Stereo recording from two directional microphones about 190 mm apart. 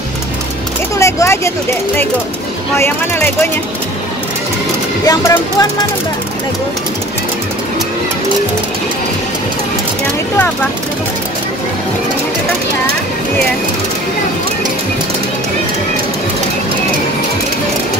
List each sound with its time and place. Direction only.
0.9 s speech: 15° left (ahead or behind)
5.0 s speech: 15° left (ahead or behind)